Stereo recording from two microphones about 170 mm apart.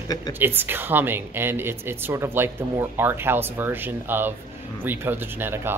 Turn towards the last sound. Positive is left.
turn(degrees=-15)  # may be behind; listen again after turning